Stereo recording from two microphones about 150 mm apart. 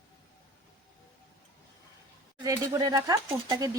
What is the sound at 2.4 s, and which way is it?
Speech, 20° right (ahead or behind).